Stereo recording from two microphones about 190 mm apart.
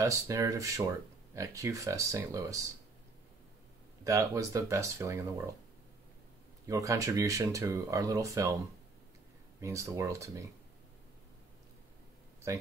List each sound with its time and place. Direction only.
0.0 s speech: 15° right (ahead or behind)
4.0 s speech: 15° right (ahead or behind)
6.6 s speech: 15° right (ahead or behind)
9.6 s speech: 15° right (ahead or behind)